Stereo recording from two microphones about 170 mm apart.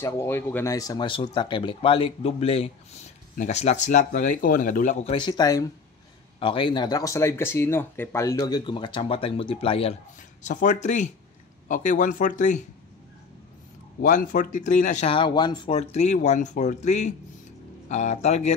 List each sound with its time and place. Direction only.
0.0 s speech: 15° left (ahead or behind); by 5.1 s 50° left (ahead or behind)
5.1 s speech: 25° left (ahead or behind)
10.4 s speech: 50° left (ahead or behind)
14.0 s speech: 50° left (ahead or behind)
15.1 s speech: 25° left (ahead or behind)
15.7 s speech: 40° left (ahead or behind)